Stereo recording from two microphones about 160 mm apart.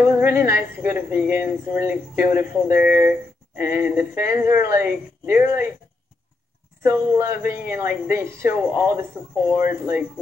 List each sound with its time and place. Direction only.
0.0 s speech: 10° right (ahead or behind)
6.8 s speech: 15° right (ahead or behind)